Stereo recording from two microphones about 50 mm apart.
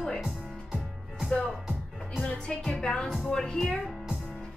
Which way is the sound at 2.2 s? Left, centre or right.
Centre.